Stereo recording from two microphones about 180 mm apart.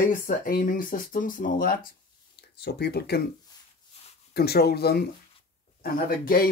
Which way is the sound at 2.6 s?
65° left (ahead or behind).